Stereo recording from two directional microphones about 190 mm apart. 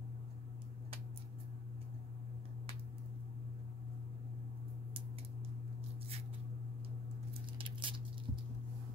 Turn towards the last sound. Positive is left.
turn(degrees=-25)  # may be behind; listen again after turning